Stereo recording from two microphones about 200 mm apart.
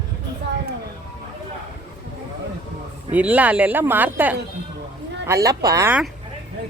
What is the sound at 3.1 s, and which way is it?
Speech, 5° right (ahead or behind).